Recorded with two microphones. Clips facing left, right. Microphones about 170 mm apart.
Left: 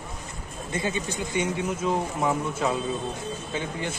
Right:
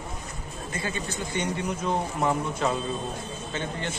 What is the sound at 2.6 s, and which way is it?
Speech, 5° left (ahead or behind).